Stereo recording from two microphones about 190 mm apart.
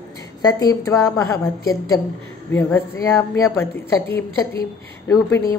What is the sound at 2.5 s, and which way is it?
A woman's voice, 10° left (ahead or behind).